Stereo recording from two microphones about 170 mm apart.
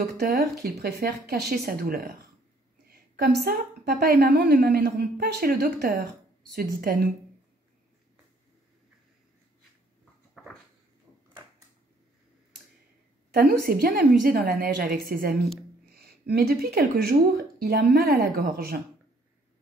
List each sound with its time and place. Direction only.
0.2 s speech: 65° right (ahead or behind)
3.2 s a woman's voice: 70° right (ahead or behind)
10.4 s a sound: 5° right (ahead or behind)
13.3 s a woman's voice: 60° right (ahead or behind)